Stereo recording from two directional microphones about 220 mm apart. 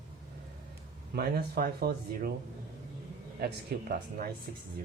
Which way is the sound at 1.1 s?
45° right (ahead or behind).